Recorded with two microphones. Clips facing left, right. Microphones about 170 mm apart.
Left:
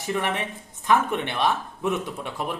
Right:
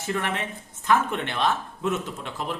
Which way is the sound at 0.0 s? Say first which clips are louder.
Left 2 dB; 15° left (ahead or behind).